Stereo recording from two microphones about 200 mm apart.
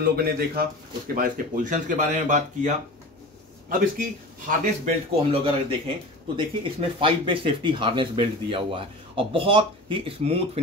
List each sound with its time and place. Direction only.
0.0 s a man's voice: 50° right (ahead or behind)
5.3 s speech: 25° right (ahead or behind)